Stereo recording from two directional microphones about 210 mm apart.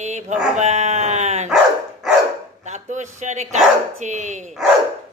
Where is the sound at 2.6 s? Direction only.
35° right (ahead or behind).